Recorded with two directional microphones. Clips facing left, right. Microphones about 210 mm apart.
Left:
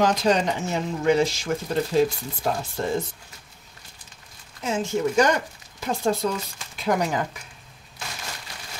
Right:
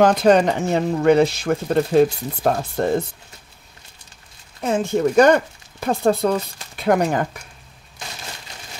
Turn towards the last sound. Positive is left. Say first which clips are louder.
# right 5 dB
turn(degrees=-55)  # may be behind; listen again after turning